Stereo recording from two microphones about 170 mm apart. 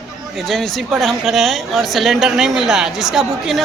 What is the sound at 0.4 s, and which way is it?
Speech, centre (ahead or behind).